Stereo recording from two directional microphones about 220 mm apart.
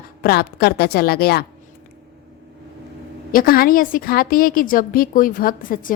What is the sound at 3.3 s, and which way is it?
A woman's voice, 40° left (ahead or behind).